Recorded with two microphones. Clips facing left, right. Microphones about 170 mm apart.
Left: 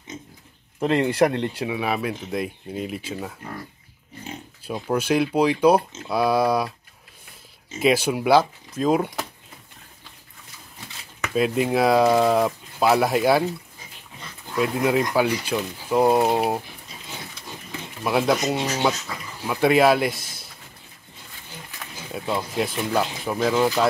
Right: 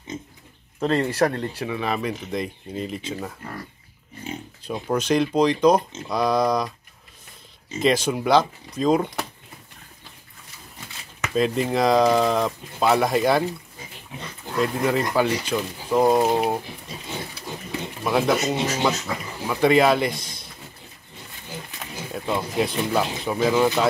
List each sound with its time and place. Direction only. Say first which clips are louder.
0.7 s speech: left 2 dB; 15° left (ahead or behind)
1.6 s speech: left 1 dB; 10° left (ahead or behind)
4.6 s speech: even; 5° left (ahead or behind)
7.8 s speech: left 1 dB; 10° left (ahead or behind)
11.3 s speech: left 1 dB; 5° left (ahead or behind)
14.6 s speech: left 1 dB; 5° left (ahead or behind)
18.0 s speech: even; 5° left (ahead or behind)
22.1 s speech: right 1 dB; centre (ahead or behind)